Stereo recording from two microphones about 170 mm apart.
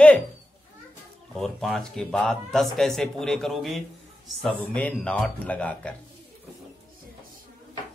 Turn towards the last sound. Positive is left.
turn(degrees=5)  # may be behind; listen again after turning